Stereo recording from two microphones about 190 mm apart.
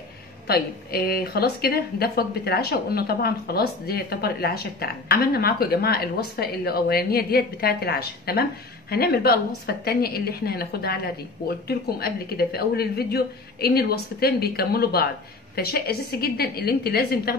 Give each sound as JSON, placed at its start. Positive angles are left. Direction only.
{"t": 0.5, "sound": "a woman's voice", "side_deg": 55}